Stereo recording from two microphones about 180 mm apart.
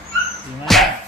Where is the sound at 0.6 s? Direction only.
Centre (ahead or behind).